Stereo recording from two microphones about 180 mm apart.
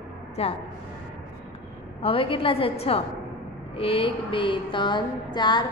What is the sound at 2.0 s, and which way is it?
A woman's voice, 30° left (ahead or behind).